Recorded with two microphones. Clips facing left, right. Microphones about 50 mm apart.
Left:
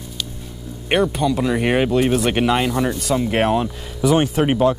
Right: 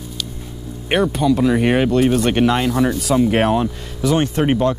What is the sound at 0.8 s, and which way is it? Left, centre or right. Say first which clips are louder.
Speech: right 2 dB; centre.